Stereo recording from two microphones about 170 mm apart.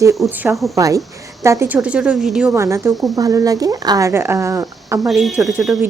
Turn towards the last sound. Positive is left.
turn(degrees=0)  # may be behind; listen again after turning